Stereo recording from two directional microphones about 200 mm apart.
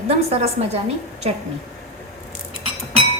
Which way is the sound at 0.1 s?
30° right (ahead or behind).